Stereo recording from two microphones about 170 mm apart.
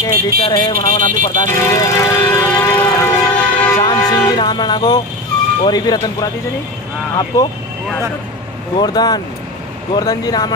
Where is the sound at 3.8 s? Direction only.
25° left (ahead or behind).